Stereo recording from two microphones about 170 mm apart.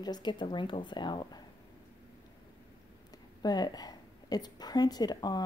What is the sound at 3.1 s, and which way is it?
A woman's voice, 25° left (ahead or behind).